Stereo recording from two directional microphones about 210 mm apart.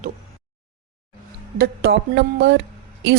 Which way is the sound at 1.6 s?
50° right (ahead or behind).